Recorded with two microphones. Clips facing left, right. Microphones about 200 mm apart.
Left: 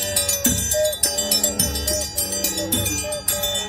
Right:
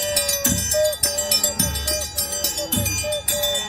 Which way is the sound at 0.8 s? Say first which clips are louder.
Right 1 dB; 30° left (ahead or behind).